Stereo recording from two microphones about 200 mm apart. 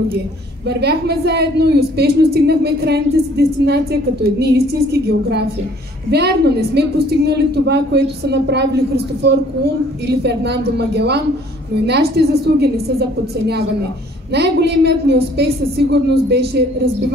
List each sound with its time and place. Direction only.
0.7 s a woman's voice: 55° right (ahead or behind)
6.0 s a woman's voice: 55° right (ahead or behind)